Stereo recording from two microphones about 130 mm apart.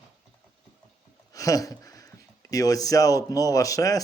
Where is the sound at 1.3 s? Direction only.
25° left (ahead or behind).